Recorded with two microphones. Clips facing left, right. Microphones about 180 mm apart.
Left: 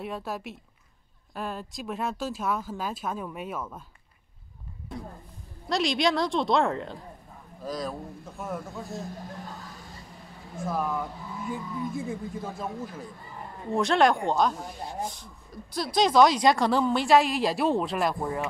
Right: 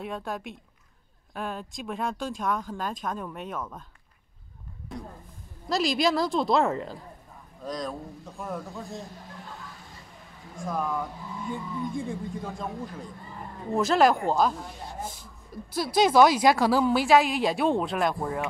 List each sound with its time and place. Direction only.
0.0 s speech: 5° left (ahead or behind)
4.9 s a sound: centre (ahead or behind)
5.7 s speech: centre (ahead or behind)
10.6 s speech: 5° left (ahead or behind)
15.7 s speech: 5° right (ahead or behind)